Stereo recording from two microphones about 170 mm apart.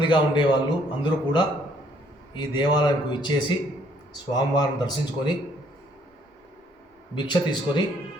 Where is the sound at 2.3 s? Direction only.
25° left (ahead or behind).